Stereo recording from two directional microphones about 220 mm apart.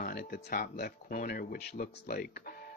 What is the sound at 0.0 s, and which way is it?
Speech, 45° left (ahead or behind).